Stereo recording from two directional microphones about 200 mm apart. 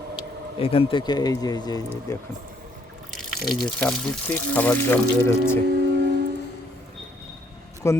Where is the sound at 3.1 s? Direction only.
Centre (ahead or behind).